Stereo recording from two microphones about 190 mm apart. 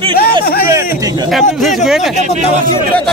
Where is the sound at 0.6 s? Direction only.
15° right (ahead or behind).